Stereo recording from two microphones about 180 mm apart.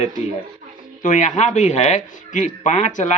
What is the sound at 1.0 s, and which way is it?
A man's voice, 45° left (ahead or behind).